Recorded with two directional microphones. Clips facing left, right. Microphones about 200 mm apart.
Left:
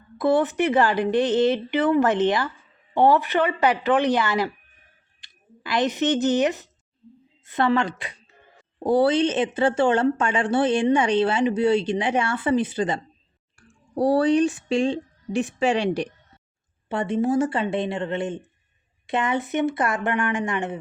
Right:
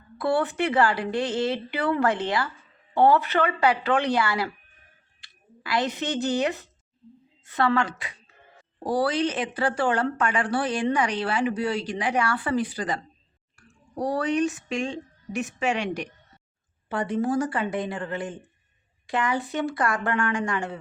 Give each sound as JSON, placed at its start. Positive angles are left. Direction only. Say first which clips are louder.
{"t": 0.2, "sound": "speech", "louder": "left 4 dB", "side_deg": 20}
{"t": 5.7, "sound": "speech", "louder": "left 5 dB", "side_deg": 20}